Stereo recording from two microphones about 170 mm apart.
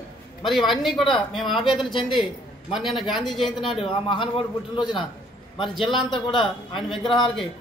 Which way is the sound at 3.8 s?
30° left (ahead or behind).